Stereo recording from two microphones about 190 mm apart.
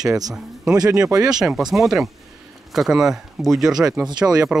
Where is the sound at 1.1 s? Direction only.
20° right (ahead or behind).